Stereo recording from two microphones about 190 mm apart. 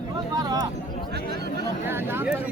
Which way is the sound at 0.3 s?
20° right (ahead or behind).